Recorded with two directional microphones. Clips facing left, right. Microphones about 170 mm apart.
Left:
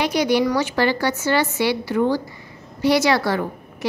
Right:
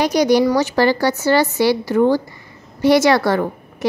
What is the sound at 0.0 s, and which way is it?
A woman's voice, 40° right (ahead or behind).